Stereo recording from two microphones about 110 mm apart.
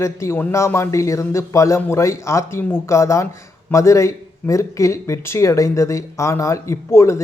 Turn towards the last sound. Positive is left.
turn(degrees=25)  # may be behind; listen again after turning